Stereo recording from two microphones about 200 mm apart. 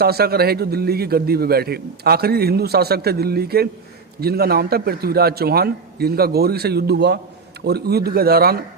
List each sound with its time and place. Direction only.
0.0 s a man's voice: 50° right (ahead or behind)